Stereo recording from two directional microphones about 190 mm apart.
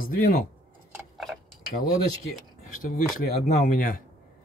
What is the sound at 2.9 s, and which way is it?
Speech, 35° left (ahead or behind).